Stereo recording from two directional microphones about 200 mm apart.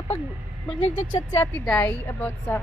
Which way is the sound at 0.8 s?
35° left (ahead or behind).